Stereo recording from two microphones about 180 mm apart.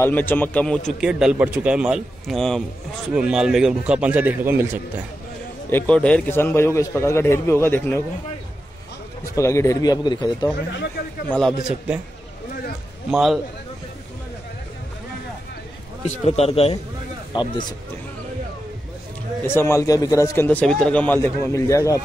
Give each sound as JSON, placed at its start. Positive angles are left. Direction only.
{"t": 0.0, "sound": "a man's voice", "side_deg": 10}
{"t": 1.0, "sound": "a man's voice", "side_deg": -5}
{"t": 5.7, "sound": "a man's voice", "side_deg": 10}
{"t": 9.2, "sound": "a man's voice", "side_deg": 15}
{"t": 11.2, "sound": "a man's voice", "side_deg": 0}
{"t": 13.1, "sound": "a man's voice", "side_deg": 0}
{"t": 16.1, "sound": "a man's voice", "side_deg": 35}
{"t": 19.4, "sound": "a man's voice", "side_deg": 15}